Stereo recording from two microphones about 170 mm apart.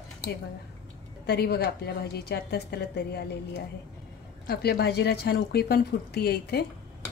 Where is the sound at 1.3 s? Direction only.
70° left (ahead or behind).